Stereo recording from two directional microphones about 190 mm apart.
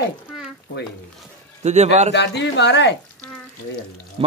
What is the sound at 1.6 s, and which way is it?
Speech, 35° right (ahead or behind).